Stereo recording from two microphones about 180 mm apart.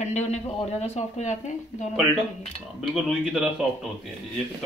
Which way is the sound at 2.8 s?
5° right (ahead or behind).